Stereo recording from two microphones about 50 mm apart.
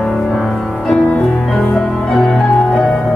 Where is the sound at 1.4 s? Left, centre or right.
Centre.